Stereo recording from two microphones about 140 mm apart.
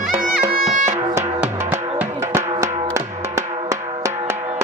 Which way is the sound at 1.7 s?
20° right (ahead or behind).